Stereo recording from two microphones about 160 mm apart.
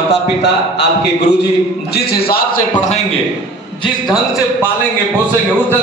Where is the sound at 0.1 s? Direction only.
90° left.